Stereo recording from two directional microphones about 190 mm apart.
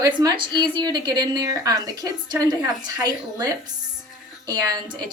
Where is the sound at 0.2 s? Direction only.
20° right (ahead or behind).